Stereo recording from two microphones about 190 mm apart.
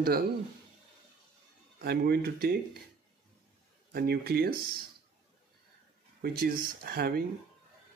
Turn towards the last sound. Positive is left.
turn(degrees=-50)  # may be behind; listen again after turning